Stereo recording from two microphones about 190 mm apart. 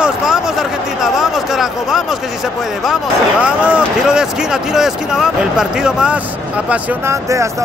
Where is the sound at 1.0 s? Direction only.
Centre (ahead or behind).